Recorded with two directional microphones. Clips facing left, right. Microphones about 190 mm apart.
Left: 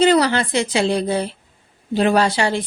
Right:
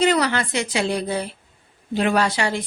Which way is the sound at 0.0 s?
30° left (ahead or behind).